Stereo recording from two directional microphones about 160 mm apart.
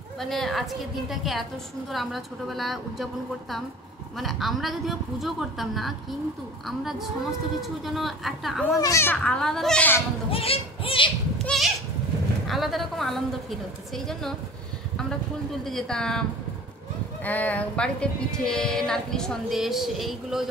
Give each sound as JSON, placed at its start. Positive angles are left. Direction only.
{"t": 0.2, "sound": "speech", "side_deg": 0}
{"t": 8.7, "sound": "a child's voice", "side_deg": 20}
{"t": 10.3, "sound": "speech", "side_deg": 35}
{"t": 11.3, "sound": "goat", "side_deg": 0}
{"t": 12.4, "sound": "speech", "side_deg": 0}
{"t": 15.6, "sound": "speech", "side_deg": 5}